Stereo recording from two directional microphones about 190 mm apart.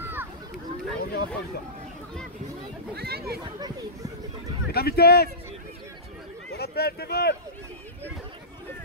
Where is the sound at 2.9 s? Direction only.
55° right (ahead or behind).